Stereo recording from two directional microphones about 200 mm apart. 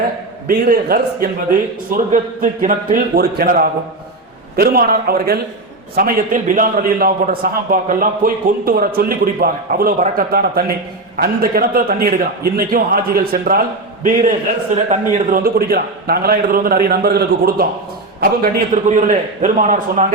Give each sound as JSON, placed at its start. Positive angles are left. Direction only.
{"t": 0.4, "sound": "a man's voice", "side_deg": -50}
{"t": 18.7, "sound": "a man's voice", "side_deg": -40}